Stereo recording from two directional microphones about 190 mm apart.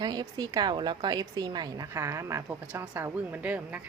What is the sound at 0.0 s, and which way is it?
A woman's voice, 20° right (ahead or behind).